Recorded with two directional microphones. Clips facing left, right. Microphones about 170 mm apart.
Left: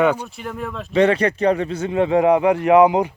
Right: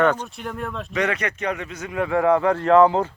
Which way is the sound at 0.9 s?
30° left (ahead or behind).